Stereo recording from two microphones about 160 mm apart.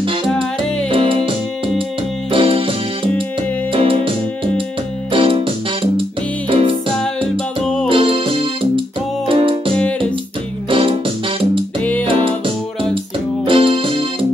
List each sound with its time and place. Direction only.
0.3 s music: 5° left (ahead or behind)
0.8 s music: 35° right (ahead or behind)
2.3 s keyboard: 35° right (ahead or behind)
3.7 s music: 35° right (ahead or behind)
5.1 s music: 35° right (ahead or behind)
7.9 s music: 35° right (ahead or behind)
13.5 s keyboard: 35° right (ahead or behind)